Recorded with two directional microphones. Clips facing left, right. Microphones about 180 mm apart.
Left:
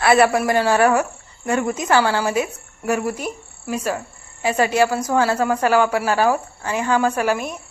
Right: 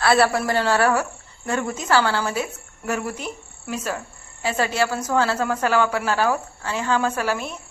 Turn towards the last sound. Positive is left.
turn(degrees=10)  # may be behind; listen again after turning